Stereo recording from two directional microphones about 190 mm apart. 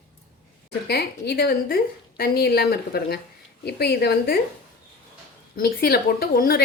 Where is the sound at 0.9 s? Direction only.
55° left (ahead or behind).